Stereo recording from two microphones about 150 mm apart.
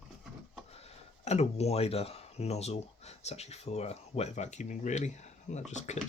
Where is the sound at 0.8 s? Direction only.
45° left (ahead or behind).